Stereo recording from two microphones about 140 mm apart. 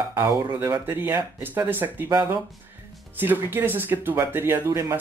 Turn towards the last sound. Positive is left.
turn(degrees=-20)  # may be behind; listen again after turning